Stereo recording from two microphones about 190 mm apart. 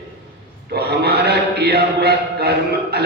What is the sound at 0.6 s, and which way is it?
Chant, 60° right (ahead or behind).